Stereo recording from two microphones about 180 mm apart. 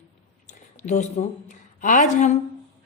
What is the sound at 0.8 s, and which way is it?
A woman's voice, 40° left (ahead or behind).